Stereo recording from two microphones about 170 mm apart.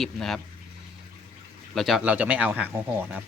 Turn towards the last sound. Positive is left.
turn(degrees=-10)  # may be behind; listen again after turning